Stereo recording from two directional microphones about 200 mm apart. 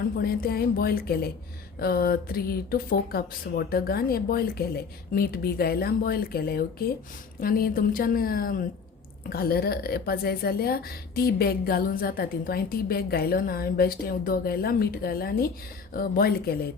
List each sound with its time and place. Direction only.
0.2 s a woman's voice: 50° left (ahead or behind)